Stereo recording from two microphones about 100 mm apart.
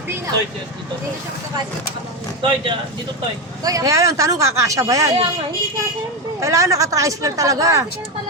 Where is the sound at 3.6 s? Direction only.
35° right (ahead or behind).